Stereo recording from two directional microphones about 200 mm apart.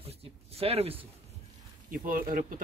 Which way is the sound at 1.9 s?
45° right (ahead or behind).